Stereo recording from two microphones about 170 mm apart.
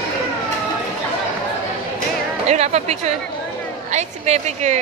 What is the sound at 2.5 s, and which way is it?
A woman's voice, 40° right (ahead or behind).